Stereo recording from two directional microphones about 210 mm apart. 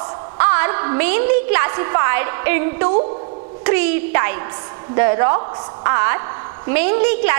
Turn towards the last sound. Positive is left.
turn(degrees=-15)  # may be behind; listen again after turning